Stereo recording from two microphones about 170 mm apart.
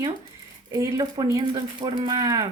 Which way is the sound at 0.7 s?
20° right (ahead or behind).